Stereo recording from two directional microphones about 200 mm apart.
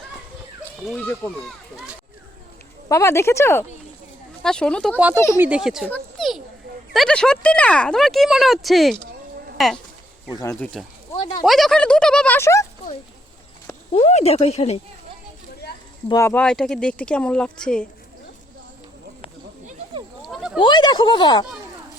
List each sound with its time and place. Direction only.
0.9 s speech: 5° left (ahead or behind)
2.9 s speech: 15° left (ahead or behind)
4.9 s speech: 10° right (ahead or behind)
5.8 s a sound: 5° left (ahead or behind)
6.9 s speech: 5° left (ahead or behind)
10.3 s speech: 15° left (ahead or behind)
11.4 s speech: centre (ahead or behind)
13.9 s speech: 30° left (ahead or behind)
16.0 s speech: 15° left (ahead or behind)
20.2 s a sound: centre (ahead or behind)
20.6 s speech: 25° left (ahead or behind)